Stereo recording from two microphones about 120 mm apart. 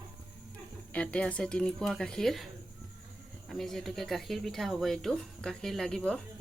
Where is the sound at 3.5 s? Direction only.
Centre (ahead or behind).